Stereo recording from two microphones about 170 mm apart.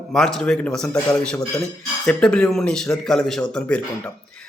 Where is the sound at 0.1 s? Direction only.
Centre (ahead or behind).